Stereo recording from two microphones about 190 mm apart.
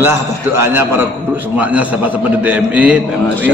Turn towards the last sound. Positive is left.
turn(degrees=-5)  # may be behind; listen again after turning